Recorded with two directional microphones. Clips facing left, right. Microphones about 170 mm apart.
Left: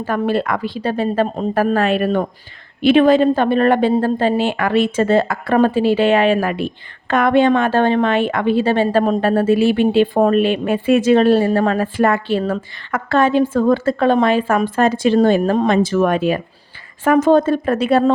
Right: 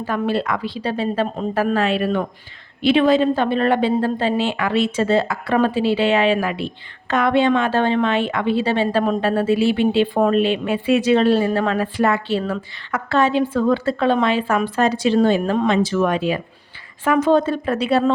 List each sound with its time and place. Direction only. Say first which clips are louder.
0.0 s speech: left 3 dB; 50° left (ahead or behind)